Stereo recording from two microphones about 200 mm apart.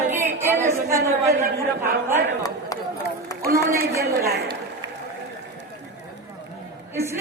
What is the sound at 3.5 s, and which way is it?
Speech, 45° right (ahead or behind).